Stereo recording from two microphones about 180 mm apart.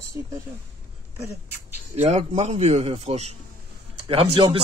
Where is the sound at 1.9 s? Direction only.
40° right (ahead or behind).